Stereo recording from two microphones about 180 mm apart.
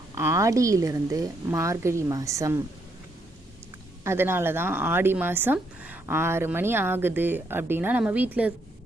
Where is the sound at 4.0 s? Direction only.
15° right (ahead or behind).